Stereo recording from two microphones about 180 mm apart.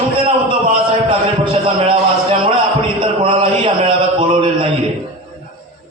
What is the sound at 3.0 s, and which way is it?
A man's voice, 30° right (ahead or behind).